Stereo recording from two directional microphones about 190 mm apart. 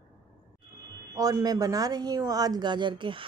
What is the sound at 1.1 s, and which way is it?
Speech, 20° right (ahead or behind).